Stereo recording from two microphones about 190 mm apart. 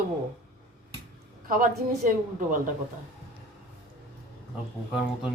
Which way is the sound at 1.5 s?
45° right (ahead or behind).